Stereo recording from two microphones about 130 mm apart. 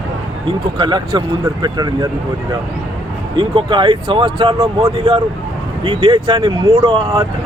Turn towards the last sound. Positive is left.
turn(degrees=-40)  # may be behind; listen again after turning